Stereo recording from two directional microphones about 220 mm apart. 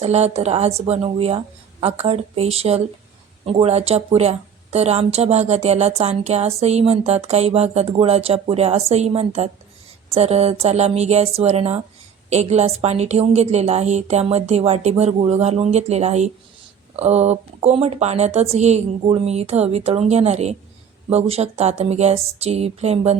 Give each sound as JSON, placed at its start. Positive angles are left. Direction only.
{"t": 0.0, "sound": "speech", "side_deg": -30}